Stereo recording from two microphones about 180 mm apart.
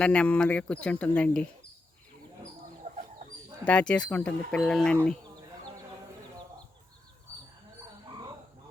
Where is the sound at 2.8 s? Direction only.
35° right (ahead or behind).